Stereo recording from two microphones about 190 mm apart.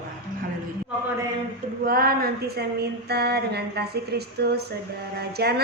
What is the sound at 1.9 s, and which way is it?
A woman's voice, 50° right (ahead or behind).